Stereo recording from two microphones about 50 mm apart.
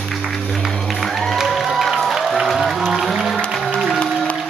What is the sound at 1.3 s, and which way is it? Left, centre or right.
Music, centre.